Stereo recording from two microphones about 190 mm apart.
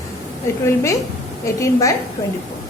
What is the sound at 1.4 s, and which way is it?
Speech, 15° left (ahead or behind).